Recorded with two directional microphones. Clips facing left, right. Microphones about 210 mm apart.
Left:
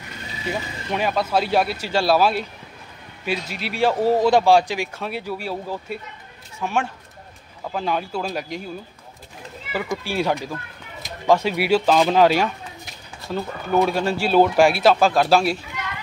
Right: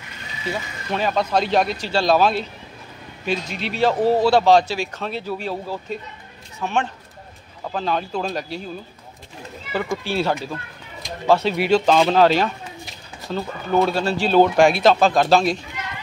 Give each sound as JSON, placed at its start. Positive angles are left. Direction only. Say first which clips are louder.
{"t": 0.5, "sound": "speech", "louder": "even", "side_deg": 10}
{"t": 10.0, "sound": "speech", "louder": "right 1 dB", "side_deg": 15}